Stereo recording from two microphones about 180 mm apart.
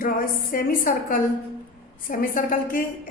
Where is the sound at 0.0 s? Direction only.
50° left (ahead or behind).